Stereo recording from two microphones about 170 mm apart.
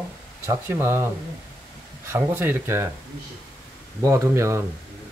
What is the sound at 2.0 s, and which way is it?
Speech, 15° right (ahead or behind).